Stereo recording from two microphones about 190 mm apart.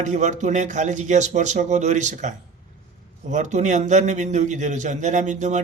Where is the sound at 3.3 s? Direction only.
40° right (ahead or behind).